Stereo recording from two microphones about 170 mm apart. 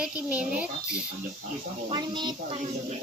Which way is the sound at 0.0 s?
10° right (ahead or behind).